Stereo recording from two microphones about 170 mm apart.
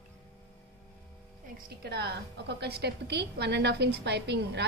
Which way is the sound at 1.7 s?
70° right (ahead or behind).